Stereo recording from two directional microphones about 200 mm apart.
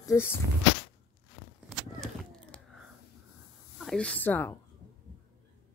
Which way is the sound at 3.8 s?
5° left (ahead or behind).